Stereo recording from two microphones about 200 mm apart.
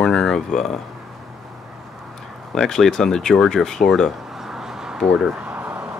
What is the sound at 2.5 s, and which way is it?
Speech, 5° left (ahead or behind).